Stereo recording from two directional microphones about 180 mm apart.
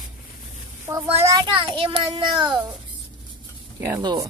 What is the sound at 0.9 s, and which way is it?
A child's voice, 25° right (ahead or behind).